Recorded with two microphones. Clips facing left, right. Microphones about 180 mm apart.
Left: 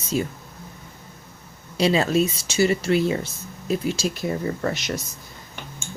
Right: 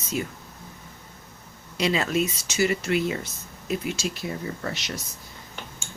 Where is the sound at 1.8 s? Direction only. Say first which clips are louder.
Left 5 dB; 30° left (ahead or behind); by 4.9 s 50° left (ahead or behind).